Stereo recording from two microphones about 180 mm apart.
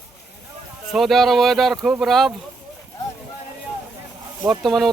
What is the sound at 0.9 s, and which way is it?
Speech, centre (ahead or behind).